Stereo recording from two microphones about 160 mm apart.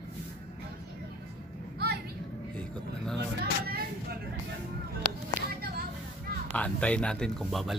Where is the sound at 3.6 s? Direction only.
75° right (ahead or behind).